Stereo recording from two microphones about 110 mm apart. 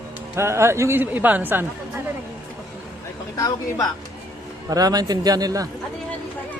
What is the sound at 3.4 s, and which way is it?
Speech, 30° left (ahead or behind).